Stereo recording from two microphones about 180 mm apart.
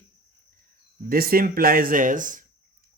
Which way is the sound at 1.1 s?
55° right (ahead or behind).